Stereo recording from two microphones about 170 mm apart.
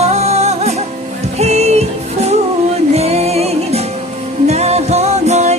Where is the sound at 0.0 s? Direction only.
40° right (ahead or behind).